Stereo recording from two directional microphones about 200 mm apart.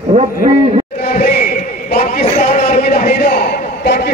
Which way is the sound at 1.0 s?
35° left (ahead or behind).